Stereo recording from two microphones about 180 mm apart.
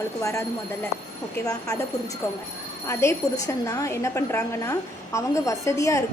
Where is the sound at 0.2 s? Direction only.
15° left (ahead or behind).